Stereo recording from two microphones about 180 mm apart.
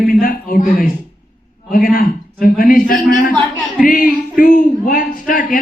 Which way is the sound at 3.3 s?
Centre (ahead or behind).